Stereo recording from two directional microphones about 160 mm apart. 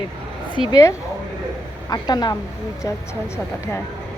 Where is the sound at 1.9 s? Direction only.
25° left (ahead or behind).